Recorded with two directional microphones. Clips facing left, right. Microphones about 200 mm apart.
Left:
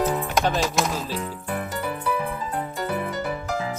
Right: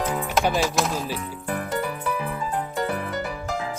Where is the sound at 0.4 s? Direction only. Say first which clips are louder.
Right 2 dB; 10° right (ahead or behind).